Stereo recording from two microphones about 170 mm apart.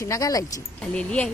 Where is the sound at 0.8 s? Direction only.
5° left (ahead or behind).